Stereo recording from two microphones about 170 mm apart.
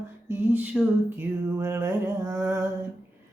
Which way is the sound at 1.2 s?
15° right (ahead or behind).